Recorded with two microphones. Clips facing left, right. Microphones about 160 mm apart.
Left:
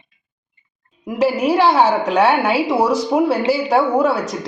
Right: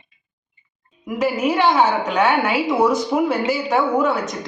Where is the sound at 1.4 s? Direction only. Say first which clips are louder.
Left 2 dB; 35° left (ahead or behind).